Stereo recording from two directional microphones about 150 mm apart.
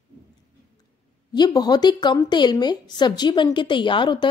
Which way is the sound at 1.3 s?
25° left (ahead or behind).